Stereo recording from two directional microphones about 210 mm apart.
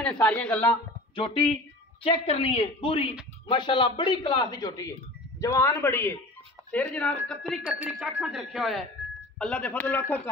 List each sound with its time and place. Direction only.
0.0 s a man's voice: 5° left (ahead or behind)
1.1 s a man's voice: 25° left (ahead or behind); by 10.3 s 10° left (ahead or behind)